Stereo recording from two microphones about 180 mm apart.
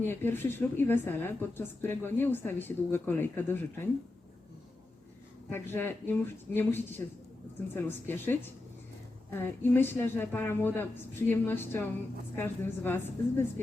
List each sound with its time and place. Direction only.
0.1 s a woman's voice: 10° left (ahead or behind)
5.5 s a woman's voice: 10° left (ahead or behind)
9.4 s a woman's voice: 10° left (ahead or behind)